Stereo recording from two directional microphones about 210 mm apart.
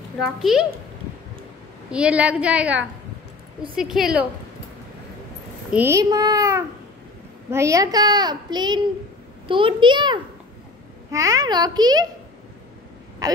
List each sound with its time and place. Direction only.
0.4 s a woman's voice: centre (ahead or behind)
1.9 s a woman's voice: 5° right (ahead or behind)
5.7 s a child's voice: 10° right (ahead or behind)